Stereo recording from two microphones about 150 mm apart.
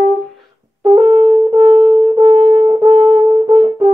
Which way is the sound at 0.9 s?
30° right (ahead or behind).